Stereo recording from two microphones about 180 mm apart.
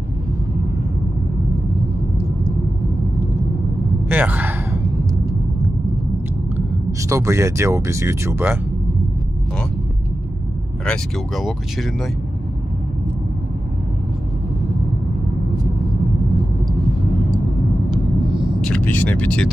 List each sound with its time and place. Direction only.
4.1 s sigh: 10° right (ahead or behind)
6.5 s speech: 15° right (ahead or behind)
10.9 s speech: centre (ahead or behind)
17.8 s vehicle: centre (ahead or behind)